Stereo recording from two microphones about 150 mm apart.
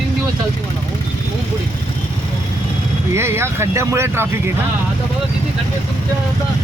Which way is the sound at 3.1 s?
15° right (ahead or behind).